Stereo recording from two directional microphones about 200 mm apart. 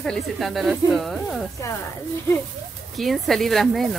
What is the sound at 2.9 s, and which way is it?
Speech, centre (ahead or behind).